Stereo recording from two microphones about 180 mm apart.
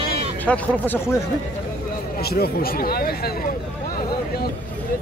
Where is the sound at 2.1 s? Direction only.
60° left (ahead or behind).